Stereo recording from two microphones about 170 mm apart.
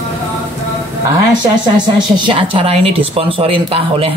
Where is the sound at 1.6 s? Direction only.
25° right (ahead or behind).